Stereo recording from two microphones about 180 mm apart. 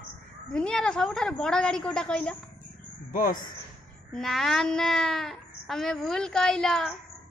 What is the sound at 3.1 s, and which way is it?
Speech, 50° left (ahead or behind).